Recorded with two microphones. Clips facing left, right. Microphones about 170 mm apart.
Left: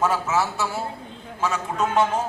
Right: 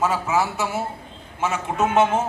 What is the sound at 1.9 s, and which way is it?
Speech, 25° right (ahead or behind).